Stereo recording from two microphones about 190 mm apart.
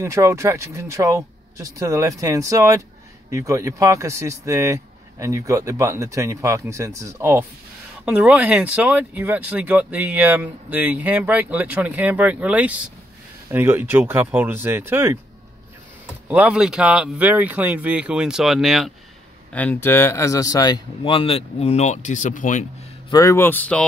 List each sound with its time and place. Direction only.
0.0 s speech: 15° right (ahead or behind)
16.3 s speech: 5° right (ahead or behind)
19.5 s speech: 10° left (ahead or behind); by 22.7 s 40° left (ahead or behind)
23.0 s a man's voice: 15° left (ahead or behind)